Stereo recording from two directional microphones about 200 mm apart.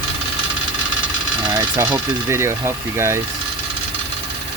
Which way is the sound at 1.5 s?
20° right (ahead or behind).